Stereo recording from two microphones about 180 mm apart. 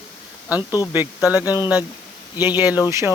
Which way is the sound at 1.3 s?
10° right (ahead or behind).